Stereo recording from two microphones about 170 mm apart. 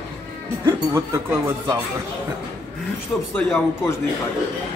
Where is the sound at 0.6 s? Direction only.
15° right (ahead or behind).